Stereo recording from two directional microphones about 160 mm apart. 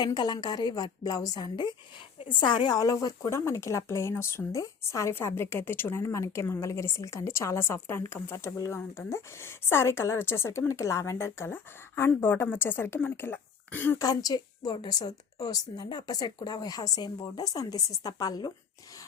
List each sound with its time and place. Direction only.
0.0 s a woman's voice: 25° left (ahead or behind)
14.1 s a woman's voice: 25° left (ahead or behind)